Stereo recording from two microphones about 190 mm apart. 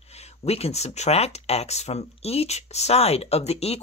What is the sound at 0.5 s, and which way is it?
Speech, 35° left (ahead or behind).